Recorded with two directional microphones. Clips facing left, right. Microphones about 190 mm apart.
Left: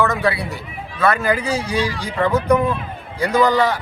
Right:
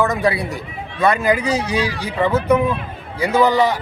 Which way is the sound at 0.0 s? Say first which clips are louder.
Right 1 dB; 20° right (ahead or behind).